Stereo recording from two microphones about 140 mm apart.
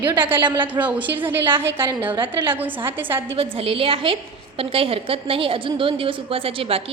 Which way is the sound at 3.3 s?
40° right (ahead or behind).